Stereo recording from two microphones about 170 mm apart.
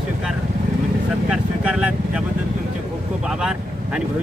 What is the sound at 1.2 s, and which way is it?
Speech, 5° right (ahead or behind).